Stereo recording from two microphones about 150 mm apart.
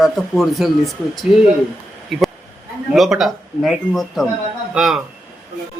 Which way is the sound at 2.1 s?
Centre (ahead or behind).